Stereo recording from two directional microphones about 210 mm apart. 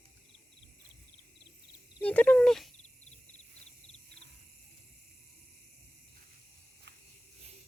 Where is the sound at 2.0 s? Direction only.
5° left (ahead or behind).